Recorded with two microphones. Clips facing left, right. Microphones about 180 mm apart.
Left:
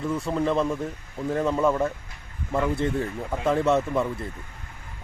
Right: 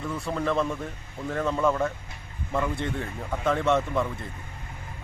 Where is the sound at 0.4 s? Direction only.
30° left (ahead or behind).